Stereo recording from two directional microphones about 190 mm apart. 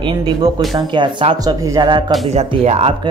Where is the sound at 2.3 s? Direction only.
30° right (ahead or behind).